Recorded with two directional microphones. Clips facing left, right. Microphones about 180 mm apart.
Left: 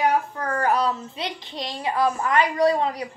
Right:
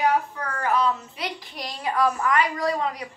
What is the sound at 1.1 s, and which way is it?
A woman's voice, 25° left (ahead or behind).